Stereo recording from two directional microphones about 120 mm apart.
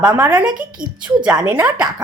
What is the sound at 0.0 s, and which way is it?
Speech, 30° right (ahead or behind).